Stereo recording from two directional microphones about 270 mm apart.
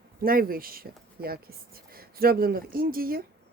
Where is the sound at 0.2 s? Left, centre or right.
Right.